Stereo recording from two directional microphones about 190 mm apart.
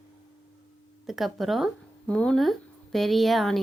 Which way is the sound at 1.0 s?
Centre (ahead or behind).